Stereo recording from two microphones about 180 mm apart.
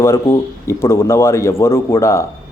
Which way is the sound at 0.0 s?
15° left (ahead or behind).